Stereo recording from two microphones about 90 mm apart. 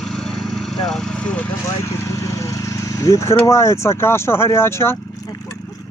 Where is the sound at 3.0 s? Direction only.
35° left (ahead or behind).